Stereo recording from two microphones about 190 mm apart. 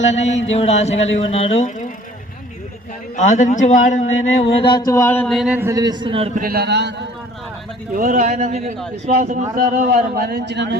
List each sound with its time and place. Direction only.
0.0 s speech: 35° left (ahead or behind)
0.9 s speech: 80° left
1.2 s speech: 30° left (ahead or behind)
3.2 s speech: 40° left (ahead or behind); by 6.4 s 30° right (ahead or behind)
6.4 s a man's voice: 55° right (ahead or behind)
7.9 s a man's voice: 45° right (ahead or behind); by 10.8 s 65° right (ahead or behind)